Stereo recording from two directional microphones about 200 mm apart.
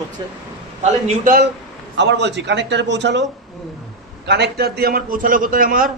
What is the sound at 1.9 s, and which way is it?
A man's voice, 60° right (ahead or behind).